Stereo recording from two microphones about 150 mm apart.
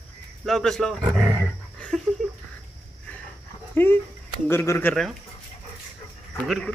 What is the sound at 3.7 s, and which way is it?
Dog, 15° left (ahead or behind).